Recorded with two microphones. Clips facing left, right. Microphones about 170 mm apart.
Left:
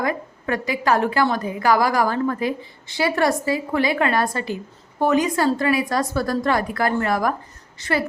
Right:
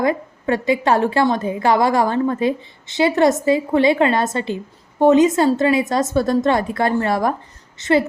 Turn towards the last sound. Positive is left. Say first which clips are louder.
# right 7 dB
turn(degrees=-20)  # may be behind; listen again after turning